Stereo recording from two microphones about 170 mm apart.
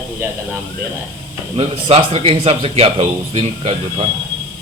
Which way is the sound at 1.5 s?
35° right (ahead or behind).